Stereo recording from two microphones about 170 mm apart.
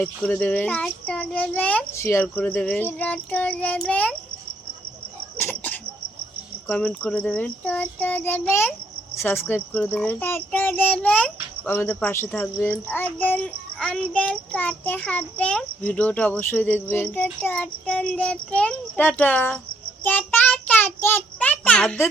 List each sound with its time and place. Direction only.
0.0 s a child's voice: 10° left (ahead or behind)
5.4 s a sound: 10° left (ahead or behind)
6.7 s a child's voice: 10° left (ahead or behind)
20.1 s child singing: 10° left (ahead or behind)